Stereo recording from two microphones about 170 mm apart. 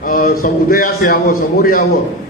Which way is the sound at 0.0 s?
60° left (ahead or behind).